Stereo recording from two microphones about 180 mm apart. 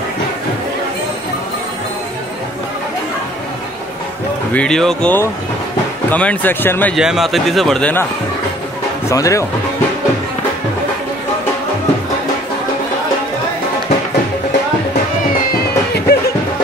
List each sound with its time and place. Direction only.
4.6 s speech: 5° left (ahead or behind)
7.0 s speech: centre (ahead or behind)
9.1 s speech: 15° left (ahead or behind)
15.5 s music: 60° left (ahead or behind)